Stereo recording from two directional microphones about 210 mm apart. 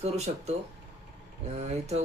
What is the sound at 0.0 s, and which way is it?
Speech, 30° right (ahead or behind).